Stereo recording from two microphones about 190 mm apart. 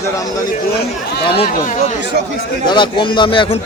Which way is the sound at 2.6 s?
25° left (ahead or behind).